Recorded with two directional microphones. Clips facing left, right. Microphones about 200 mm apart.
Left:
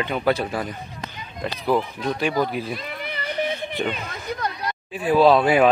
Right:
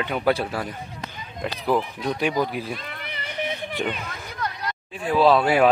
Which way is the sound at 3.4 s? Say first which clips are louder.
Right 1 dB; 5° right (ahead or behind).